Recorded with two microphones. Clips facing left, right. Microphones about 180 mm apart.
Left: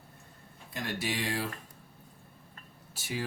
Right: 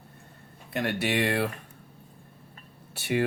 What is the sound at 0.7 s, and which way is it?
Speech, 65° right (ahead or behind).